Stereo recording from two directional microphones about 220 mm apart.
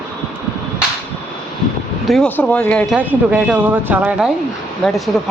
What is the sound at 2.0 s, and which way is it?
Speech, centre (ahead or behind).